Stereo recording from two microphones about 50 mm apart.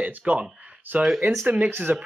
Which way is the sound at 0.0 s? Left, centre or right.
Right.